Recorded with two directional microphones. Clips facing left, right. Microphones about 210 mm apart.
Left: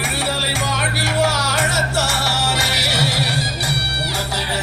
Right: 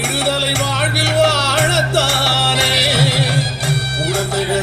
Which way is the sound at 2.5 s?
55° right (ahead or behind).